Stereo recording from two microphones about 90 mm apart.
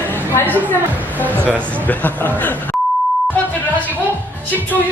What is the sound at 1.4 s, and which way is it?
Speech, 20° right (ahead or behind).